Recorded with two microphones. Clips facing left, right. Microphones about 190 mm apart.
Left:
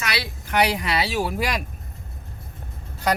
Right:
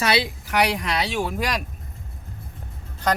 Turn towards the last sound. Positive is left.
turn(degrees=10)  # may be behind; listen again after turning